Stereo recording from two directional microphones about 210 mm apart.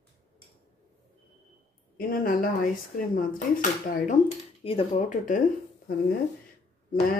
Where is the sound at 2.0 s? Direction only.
45° left (ahead or behind).